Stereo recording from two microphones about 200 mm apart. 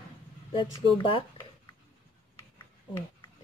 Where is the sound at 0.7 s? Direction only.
25° left (ahead or behind).